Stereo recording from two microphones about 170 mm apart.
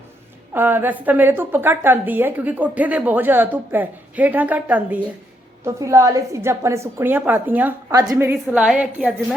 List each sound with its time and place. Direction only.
0.5 s a woman's voice: 10° right (ahead or behind)